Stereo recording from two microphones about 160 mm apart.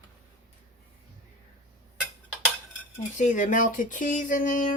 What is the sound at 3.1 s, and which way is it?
Speech, 50° left (ahead or behind).